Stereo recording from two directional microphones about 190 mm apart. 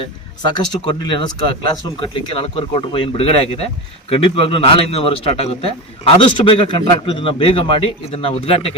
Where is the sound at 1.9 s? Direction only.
25° left (ahead or behind).